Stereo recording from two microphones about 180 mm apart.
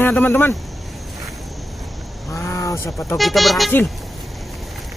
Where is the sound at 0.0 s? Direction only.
10° left (ahead or behind).